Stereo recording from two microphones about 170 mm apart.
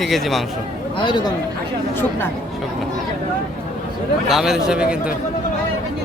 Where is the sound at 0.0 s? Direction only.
Centre (ahead or behind).